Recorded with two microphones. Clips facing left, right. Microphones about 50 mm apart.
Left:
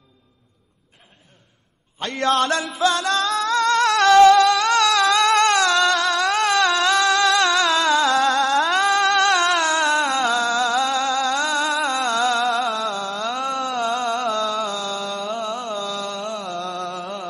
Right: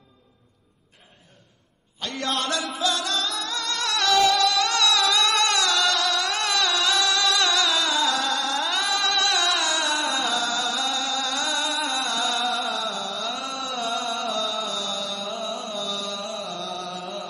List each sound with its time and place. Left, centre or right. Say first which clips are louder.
2.0 s a man's voice: left 8 dB; left
2.6 s music: left 6 dB; left
5.1 s a sound: left 6 dB; left